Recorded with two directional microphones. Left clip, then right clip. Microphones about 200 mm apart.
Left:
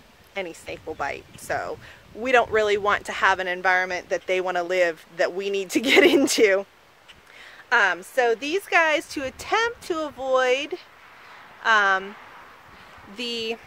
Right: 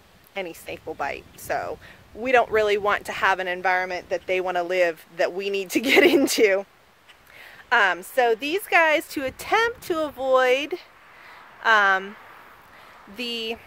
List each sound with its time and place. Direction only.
0.3 s speech: 5° right (ahead or behind)
7.3 s speech: 40° right (ahead or behind)
13.1 s speech: 10° right (ahead or behind)